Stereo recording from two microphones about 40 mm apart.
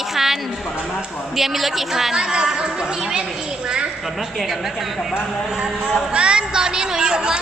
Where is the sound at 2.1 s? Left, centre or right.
Centre.